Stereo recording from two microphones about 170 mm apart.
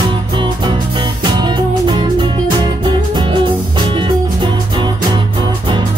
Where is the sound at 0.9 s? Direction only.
25° right (ahead or behind).